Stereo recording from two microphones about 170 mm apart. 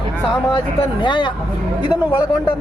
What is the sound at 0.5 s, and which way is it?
Speech, 25° left (ahead or behind).